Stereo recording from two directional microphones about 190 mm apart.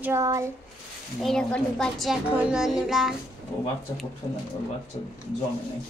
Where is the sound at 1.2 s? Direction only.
5° left (ahead or behind).